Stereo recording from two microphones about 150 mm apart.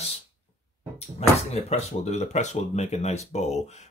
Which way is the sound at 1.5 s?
45° left (ahead or behind).